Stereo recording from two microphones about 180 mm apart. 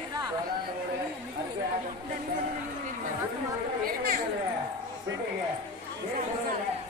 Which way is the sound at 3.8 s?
55° right (ahead or behind).